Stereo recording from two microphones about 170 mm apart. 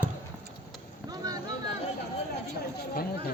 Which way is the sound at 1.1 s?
20° right (ahead or behind).